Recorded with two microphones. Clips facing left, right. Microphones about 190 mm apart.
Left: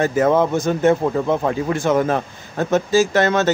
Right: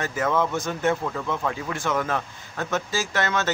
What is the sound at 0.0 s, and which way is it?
Speech, 40° left (ahead or behind).